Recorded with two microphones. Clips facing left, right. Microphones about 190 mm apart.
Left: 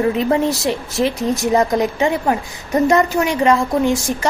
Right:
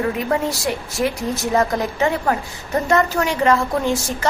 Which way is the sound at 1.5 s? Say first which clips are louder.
Left 2 dB; 20° left (ahead or behind).